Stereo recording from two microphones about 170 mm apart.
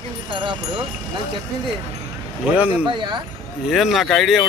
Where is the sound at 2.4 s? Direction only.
10° right (ahead or behind).